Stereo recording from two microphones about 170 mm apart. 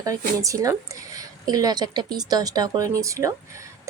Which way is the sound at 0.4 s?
20° right (ahead or behind).